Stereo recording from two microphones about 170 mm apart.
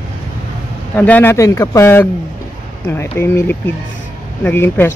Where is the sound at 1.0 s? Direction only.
10° left (ahead or behind).